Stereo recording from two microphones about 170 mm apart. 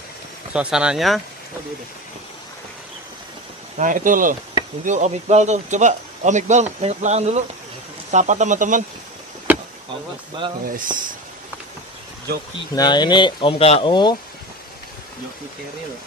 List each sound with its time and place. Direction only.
0.5 s speech: 5° right (ahead or behind)
3.8 s a man's voice: 50° right (ahead or behind)
9.5 s vehicle: 10° right (ahead or behind)
10.7 s a man's voice: 50° right (ahead or behind)
12.7 s speech: 25° left (ahead or behind)